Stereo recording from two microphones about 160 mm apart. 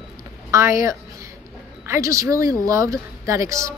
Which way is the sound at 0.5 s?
20° right (ahead or behind).